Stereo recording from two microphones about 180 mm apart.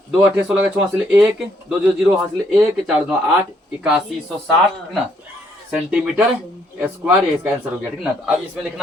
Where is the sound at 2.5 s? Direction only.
5° right (ahead or behind).